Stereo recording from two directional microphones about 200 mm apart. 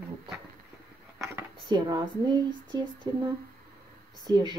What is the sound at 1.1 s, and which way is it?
Speech, 15° right (ahead or behind).